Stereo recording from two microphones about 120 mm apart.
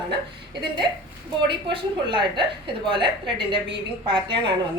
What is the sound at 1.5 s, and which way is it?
A woman's voice, 45° right (ahead or behind).